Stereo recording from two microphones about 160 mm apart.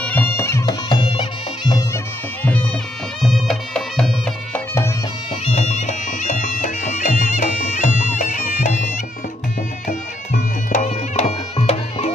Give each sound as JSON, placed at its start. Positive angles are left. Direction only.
{"t": 0.0, "sound": "bagpipes", "side_deg": 10}
{"t": 3.2, "sound": "music", "side_deg": 0}
{"t": 5.4, "sound": "music", "side_deg": 45}
{"t": 10.7, "sound": "music", "side_deg": 45}